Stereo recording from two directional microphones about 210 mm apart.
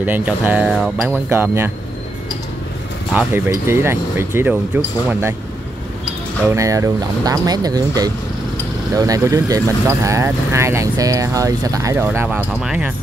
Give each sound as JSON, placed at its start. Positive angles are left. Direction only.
{"t": 0.0, "sound": "speech", "side_deg": -10}
{"t": 3.1, "sound": "speech", "side_deg": -10}
{"t": 6.5, "sound": "speech", "side_deg": -15}